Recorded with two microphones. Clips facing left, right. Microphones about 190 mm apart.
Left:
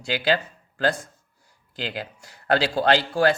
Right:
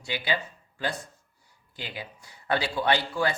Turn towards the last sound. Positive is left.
turn(degrees=85)